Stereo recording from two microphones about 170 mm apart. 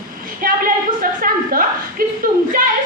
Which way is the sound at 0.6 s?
55° right (ahead or behind).